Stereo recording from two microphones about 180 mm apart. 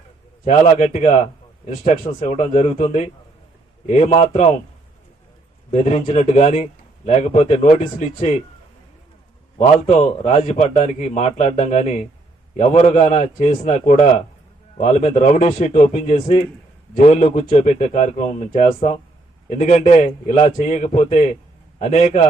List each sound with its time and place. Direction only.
0.4 s a man's voice: 40° left (ahead or behind)
5.7 s a man's voice: 35° left (ahead or behind)
9.6 s a man's voice: 35° left (ahead or behind)